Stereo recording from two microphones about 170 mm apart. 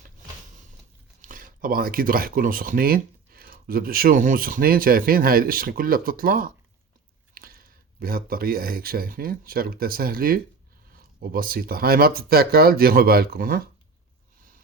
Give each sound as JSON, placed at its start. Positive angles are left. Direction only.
{"t": 1.2, "sound": "speech", "side_deg": -55}